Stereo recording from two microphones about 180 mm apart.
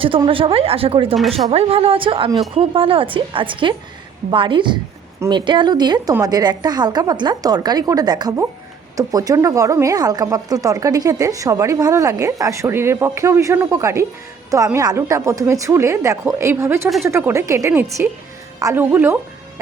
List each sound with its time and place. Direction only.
0.0 s a woman's voice: 30° right (ahead or behind); by 19.2 s 10° right (ahead or behind)